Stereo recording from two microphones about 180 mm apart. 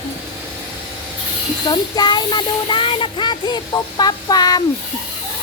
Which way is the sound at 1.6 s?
25° left (ahead or behind).